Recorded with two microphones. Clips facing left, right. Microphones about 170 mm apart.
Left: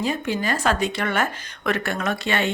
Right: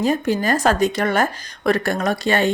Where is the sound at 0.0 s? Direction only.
45° right (ahead or behind).